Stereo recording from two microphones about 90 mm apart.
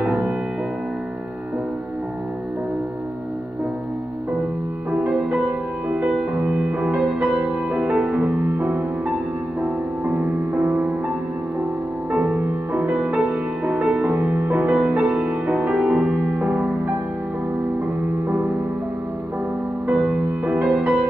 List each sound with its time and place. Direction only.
5.0 s music: 10° right (ahead or behind)
12.1 s music: 15° right (ahead or behind)
14.1 s music: 25° right (ahead or behind)
19.9 s music: 15° right (ahead or behind)